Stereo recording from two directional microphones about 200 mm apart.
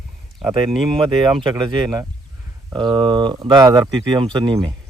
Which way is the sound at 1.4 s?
20° right (ahead or behind).